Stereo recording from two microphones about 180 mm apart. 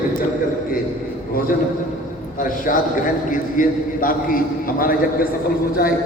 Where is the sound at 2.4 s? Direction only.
50° left (ahead or behind).